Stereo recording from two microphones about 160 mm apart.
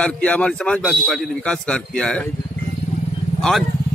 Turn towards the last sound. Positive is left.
turn(degrees=0)  # may be behind; listen again after turning